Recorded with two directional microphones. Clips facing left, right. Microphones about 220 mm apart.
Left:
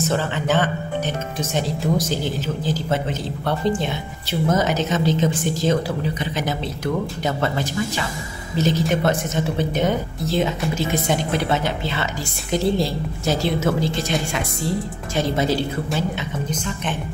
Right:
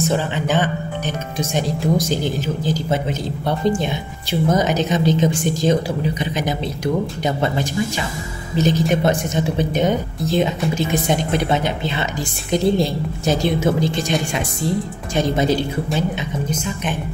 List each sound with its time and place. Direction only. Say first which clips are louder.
0.1 s a man's voice: right 1 dB; 15° right (ahead or behind)